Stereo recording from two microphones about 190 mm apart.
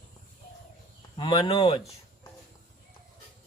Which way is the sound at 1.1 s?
30° left (ahead or behind).